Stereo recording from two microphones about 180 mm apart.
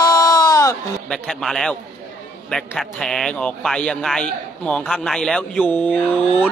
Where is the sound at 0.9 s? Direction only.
5° left (ahead or behind).